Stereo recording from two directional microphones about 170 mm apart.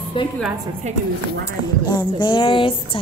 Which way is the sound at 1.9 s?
25° left (ahead or behind).